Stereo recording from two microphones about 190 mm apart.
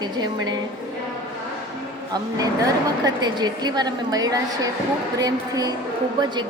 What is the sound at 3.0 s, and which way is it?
A woman's voice, 20° right (ahead or behind).